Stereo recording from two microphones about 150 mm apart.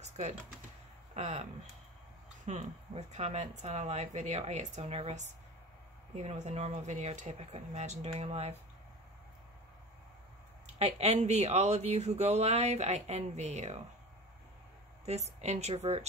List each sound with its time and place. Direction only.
1.1 s speech: 50° right (ahead or behind)
10.8 s speech: 45° right (ahead or behind)
15.0 s speech: 45° right (ahead or behind)